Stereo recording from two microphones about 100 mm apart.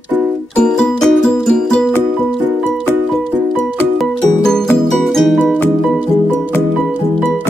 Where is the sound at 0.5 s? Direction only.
10° left (ahead or behind).